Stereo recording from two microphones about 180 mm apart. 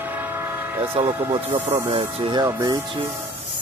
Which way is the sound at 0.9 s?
20° right (ahead or behind).